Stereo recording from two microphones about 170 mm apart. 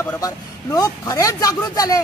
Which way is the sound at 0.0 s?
20° left (ahead or behind).